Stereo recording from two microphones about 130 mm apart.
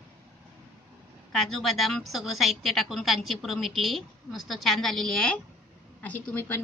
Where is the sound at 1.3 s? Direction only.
Centre (ahead or behind).